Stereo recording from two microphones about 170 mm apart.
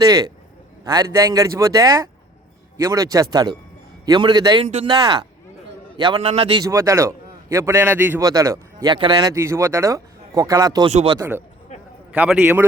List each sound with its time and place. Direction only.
0.0 s a man's voice: 20° right (ahead or behind)
4.6 s a man's voice: 35° right (ahead or behind)
6.6 s a man's voice: 20° right (ahead or behind)
11.2 s a man's voice: 15° right (ahead or behind)
11.7 s a sound: 40° left (ahead or behind)
12.1 s a man's voice: 10° right (ahead or behind)